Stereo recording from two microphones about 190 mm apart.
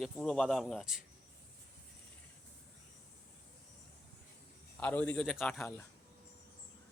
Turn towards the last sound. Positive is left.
turn(degrees=0)  # may be behind; listen again after turning